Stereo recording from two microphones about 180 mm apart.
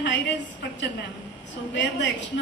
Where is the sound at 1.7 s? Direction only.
85° left.